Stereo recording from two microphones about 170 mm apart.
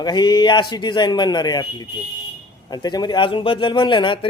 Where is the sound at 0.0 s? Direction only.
25° left (ahead or behind).